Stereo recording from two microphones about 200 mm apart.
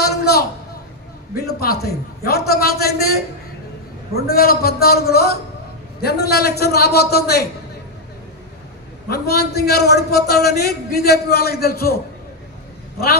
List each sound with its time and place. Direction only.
0.0 s a sound: 55° left (ahead or behind)
1.3 s a man's voice: 50° left (ahead or behind)
9.1 s a man's voice: 50° left (ahead or behind)